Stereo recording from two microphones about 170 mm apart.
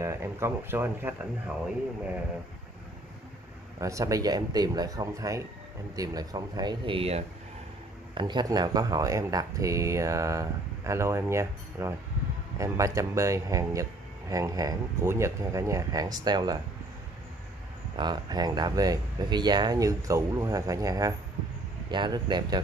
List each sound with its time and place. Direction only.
0.0 s speech: 15° right (ahead or behind)
3.8 s speech: 20° right (ahead or behind)
17.9 s speech: 25° right (ahead or behind)